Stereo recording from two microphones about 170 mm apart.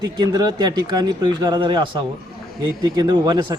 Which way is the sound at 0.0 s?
25° right (ahead or behind).